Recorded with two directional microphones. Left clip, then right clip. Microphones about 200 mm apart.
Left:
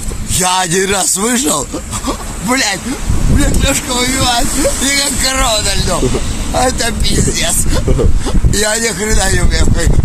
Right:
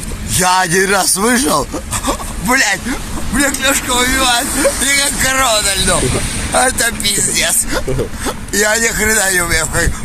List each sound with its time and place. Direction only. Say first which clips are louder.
0.4 s speech: right 1 dB; 10° left (ahead or behind)
2.0 s speech: right 1 dB; 5° left (ahead or behind)
8.3 s speech: right 4 dB; 10° left (ahead or behind)